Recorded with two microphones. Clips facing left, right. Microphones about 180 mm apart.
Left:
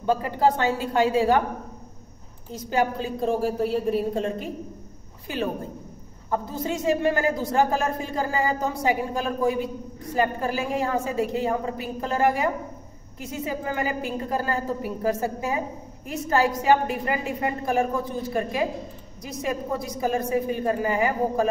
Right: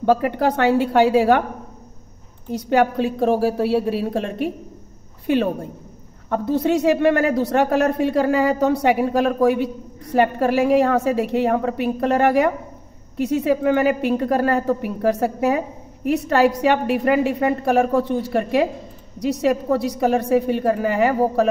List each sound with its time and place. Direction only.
0.0 s a woman's voice: 65° right (ahead or behind)
2.5 s a woman's voice: 70° right (ahead or behind)